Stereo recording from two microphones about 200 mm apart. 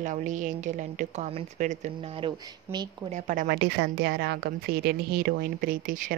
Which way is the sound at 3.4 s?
55° right (ahead or behind).